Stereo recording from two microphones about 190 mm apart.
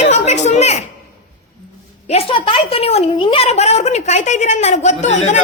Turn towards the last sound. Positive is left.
turn(degrees=35)  # may be behind; listen again after turning